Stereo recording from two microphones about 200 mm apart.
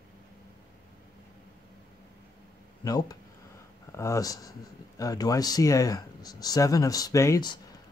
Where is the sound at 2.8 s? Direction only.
20° left (ahead or behind).